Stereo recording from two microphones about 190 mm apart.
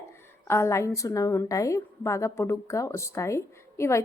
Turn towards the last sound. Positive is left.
turn(degrees=15)  # may be behind; listen again after turning